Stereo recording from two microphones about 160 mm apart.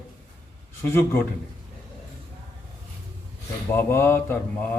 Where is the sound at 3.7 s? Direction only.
15° left (ahead or behind).